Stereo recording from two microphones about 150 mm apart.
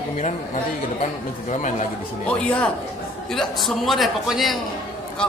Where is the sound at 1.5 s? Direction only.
55° left (ahead or behind).